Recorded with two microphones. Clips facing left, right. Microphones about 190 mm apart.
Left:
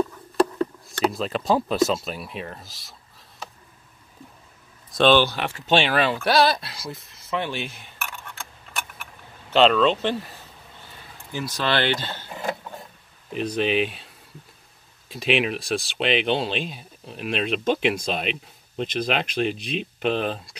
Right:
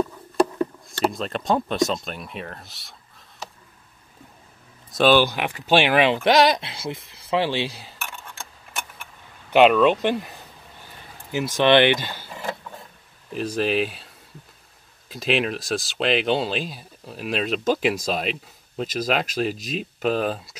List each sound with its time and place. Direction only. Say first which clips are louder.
0.8 s speech: even; centre (ahead or behind)
4.9 s speech: even; 5° right (ahead or behind); by 7.5 s 30° right (ahead or behind)
9.5 s speech: right 3 dB; 10° right (ahead or behind)
11.3 s speech: right 8 dB; 20° right (ahead or behind)
13.6 s speech: even; centre (ahead or behind)
15.0 s speech: even; centre (ahead or behind)